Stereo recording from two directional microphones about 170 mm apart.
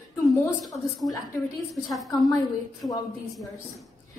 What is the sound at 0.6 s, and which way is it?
A woman's voice, centre (ahead or behind).